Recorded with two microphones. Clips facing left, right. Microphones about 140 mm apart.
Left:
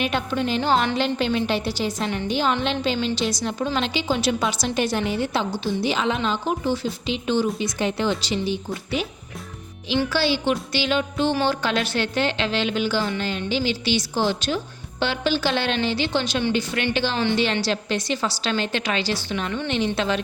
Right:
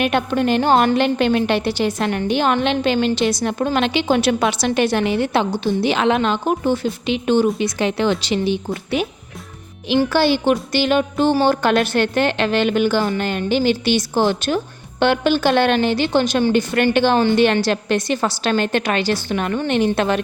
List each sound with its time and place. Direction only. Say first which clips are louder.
0.0 s a woman's voice: right 6 dB; 55° right (ahead or behind)